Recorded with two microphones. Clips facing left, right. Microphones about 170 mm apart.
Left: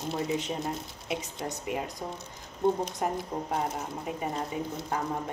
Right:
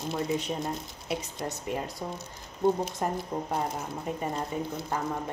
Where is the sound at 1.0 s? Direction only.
15° left (ahead or behind).